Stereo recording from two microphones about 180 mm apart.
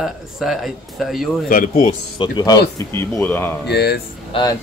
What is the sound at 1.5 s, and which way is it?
Speech, 45° left (ahead or behind).